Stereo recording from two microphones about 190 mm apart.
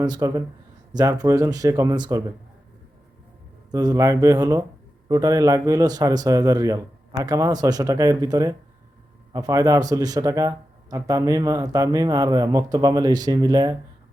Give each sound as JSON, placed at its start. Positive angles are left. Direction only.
{"t": 0.0, "sound": "speech", "side_deg": -20}
{"t": 3.7, "sound": "speech", "side_deg": -20}